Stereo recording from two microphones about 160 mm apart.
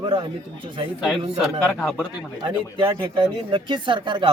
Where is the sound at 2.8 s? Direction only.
30° right (ahead or behind).